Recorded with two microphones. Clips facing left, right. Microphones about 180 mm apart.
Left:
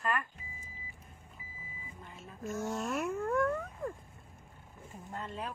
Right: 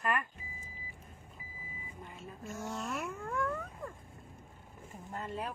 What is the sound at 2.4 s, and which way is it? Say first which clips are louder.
Speech: left 5 dB; 45° left (ahead or behind).